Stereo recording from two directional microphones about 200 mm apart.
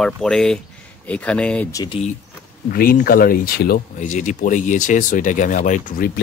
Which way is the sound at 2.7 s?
45° left (ahead or behind).